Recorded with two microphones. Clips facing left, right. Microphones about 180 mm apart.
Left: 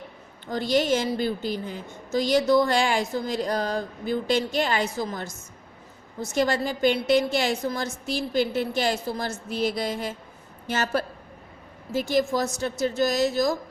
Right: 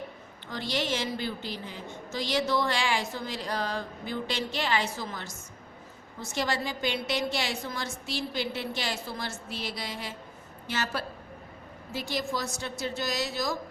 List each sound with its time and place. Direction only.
0.5 s a woman's voice: 45° left (ahead or behind)
6.3 s a woman's voice: 45° left (ahead or behind)